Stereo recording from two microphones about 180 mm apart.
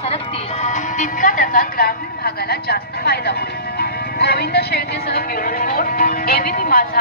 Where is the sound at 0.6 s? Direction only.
45° left (ahead or behind).